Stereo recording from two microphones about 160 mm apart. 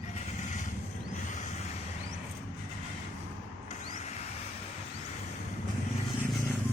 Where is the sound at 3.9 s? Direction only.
45° left (ahead or behind).